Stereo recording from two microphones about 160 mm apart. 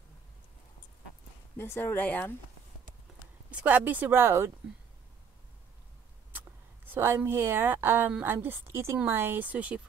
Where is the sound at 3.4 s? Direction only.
10° right (ahead or behind).